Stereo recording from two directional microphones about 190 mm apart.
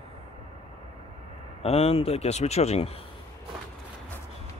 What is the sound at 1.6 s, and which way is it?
Speech, 30° left (ahead or behind).